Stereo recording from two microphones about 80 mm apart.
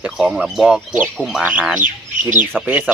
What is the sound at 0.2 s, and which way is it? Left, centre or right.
Speech, centre.